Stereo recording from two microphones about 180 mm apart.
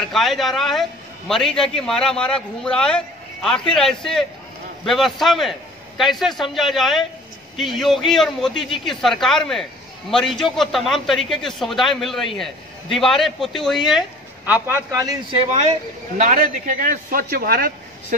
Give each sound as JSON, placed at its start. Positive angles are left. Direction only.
{"t": 0.1, "sound": "a man's voice", "side_deg": 0}
{"t": 16.2, "sound": "speech", "side_deg": -45}